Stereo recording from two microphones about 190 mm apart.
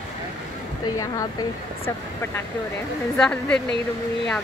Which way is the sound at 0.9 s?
20° left (ahead or behind).